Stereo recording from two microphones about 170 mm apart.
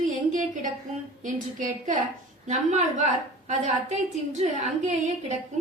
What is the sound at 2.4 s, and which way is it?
A woman's voice, 45° right (ahead or behind).